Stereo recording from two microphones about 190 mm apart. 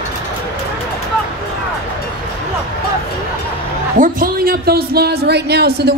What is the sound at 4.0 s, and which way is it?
A man's voice, 50° right (ahead or behind).